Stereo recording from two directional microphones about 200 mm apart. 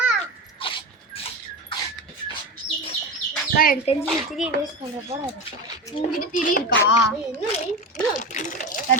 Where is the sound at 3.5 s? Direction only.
45° left (ahead or behind).